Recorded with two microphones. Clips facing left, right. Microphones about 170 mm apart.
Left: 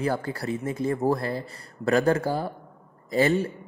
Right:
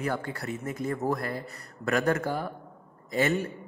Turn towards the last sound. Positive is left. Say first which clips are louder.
# left 4 dB
turn(degrees=30)  # may be behind; listen again after turning